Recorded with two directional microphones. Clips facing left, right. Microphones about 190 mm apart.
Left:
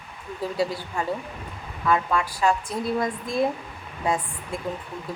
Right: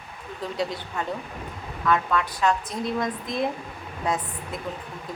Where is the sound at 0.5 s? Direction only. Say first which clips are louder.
Left 2 dB; 5° left (ahead or behind).